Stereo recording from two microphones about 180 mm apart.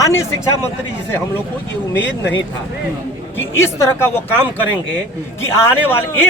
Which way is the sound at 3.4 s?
15° left (ahead or behind).